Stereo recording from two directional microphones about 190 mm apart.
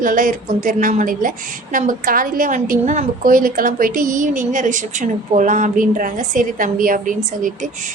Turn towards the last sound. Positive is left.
turn(degrees=-45)  # may be behind; listen again after turning